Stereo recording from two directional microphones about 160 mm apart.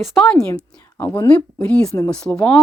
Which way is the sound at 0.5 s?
20° left (ahead or behind).